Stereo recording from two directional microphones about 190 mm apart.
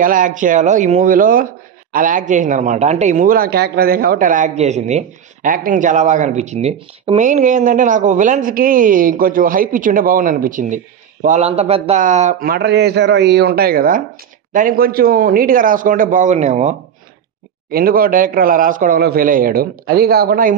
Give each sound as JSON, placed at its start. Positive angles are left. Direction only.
{"t": 0.0, "sound": "a man's voice", "side_deg": -45}
{"t": 17.6, "sound": "speech", "side_deg": -50}